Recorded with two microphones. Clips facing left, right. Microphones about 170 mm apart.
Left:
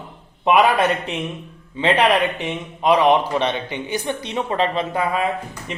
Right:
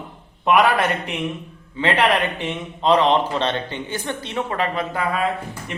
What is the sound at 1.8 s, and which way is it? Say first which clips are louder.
Speech: left 2 dB; 15° left (ahead or behind).